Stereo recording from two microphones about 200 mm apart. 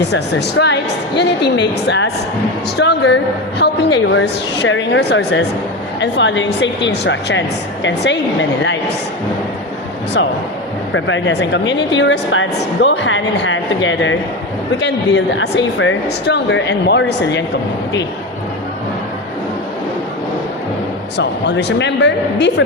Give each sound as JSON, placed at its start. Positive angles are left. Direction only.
{"t": 0.0, "sound": "a woman's voice", "side_deg": 60}
{"t": 10.9, "sound": "a woman's voice", "side_deg": 65}
{"t": 21.2, "sound": "a woman's voice", "side_deg": 60}